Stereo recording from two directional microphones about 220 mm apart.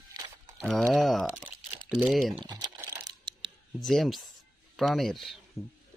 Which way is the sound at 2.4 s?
20° right (ahead or behind).